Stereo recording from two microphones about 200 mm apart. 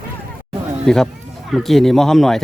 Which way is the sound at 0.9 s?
5° left (ahead or behind).